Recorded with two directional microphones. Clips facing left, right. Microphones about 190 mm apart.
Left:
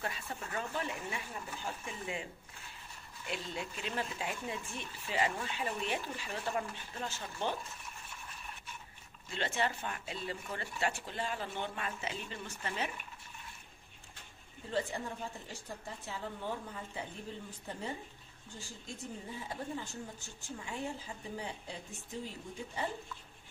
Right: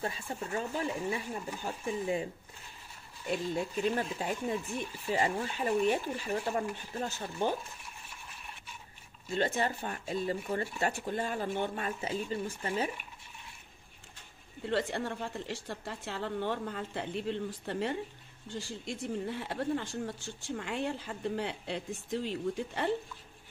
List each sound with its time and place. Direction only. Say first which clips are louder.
0.3 s speech: right 6 dB; 30° right (ahead or behind)
3.3 s speech: right 8 dB; 40° right (ahead or behind)
9.3 s speech: right 5 dB; 45° right (ahead or behind)
14.6 s speech: right 4 dB; 75° right (ahead or behind)